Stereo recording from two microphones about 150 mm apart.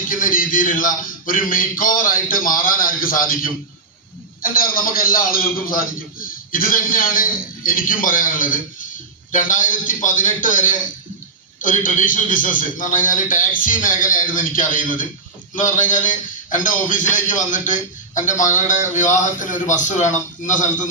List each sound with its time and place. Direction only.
0.1 s a man's voice: 65° left (ahead or behind)